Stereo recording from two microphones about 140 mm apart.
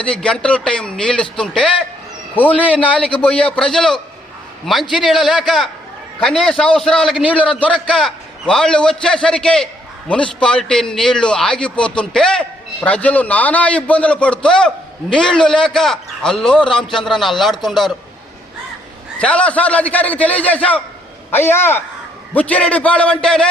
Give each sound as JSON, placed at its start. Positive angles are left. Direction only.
{"t": 0.0, "sound": "a man's voice", "side_deg": 5}
{"t": 16.6, "sound": "a man's voice", "side_deg": 35}
{"t": 16.9, "sound": "a man's voice", "side_deg": 0}
{"t": 19.2, "sound": "a man's voice", "side_deg": 10}